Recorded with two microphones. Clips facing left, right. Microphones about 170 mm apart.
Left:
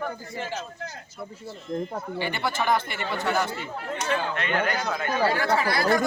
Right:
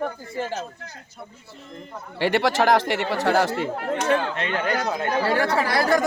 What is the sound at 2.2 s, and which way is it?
Speech, 80° right.